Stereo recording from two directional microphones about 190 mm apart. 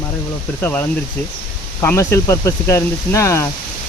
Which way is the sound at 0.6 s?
10° left (ahead or behind).